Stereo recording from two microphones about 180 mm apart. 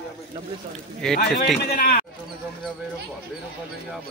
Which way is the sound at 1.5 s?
60° left (ahead or behind).